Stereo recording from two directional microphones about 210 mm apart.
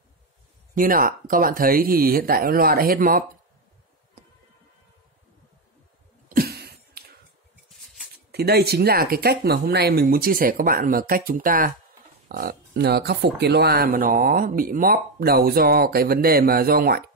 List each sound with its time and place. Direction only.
0.7 s speech: 40° right (ahead or behind)
6.2 s cough: 45° right (ahead or behind)
7.8 s a sound: centre (ahead or behind)
8.3 s speech: 50° right (ahead or behind)